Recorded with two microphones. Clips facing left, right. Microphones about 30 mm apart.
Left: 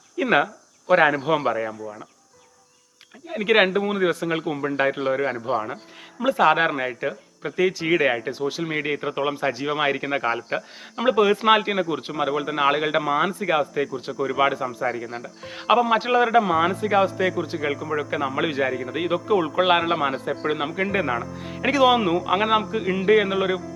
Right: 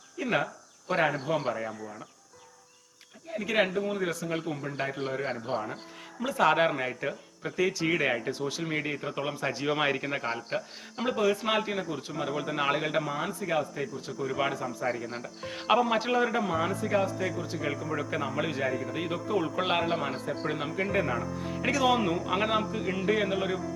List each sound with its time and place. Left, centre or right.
0.2 s a man's voice: left
3.2 s a man's voice: left
9.6 s a man's voice: centre; by 14.8 s left
14.8 s speech: centre; by 20.3 s left
20.3 s speech: left